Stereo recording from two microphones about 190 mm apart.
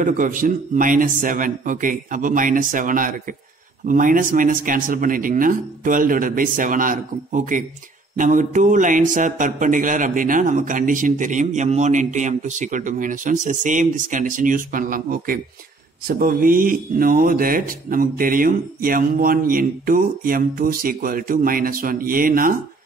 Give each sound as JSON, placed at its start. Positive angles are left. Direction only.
{"t": 0.0, "sound": "speech", "side_deg": -45}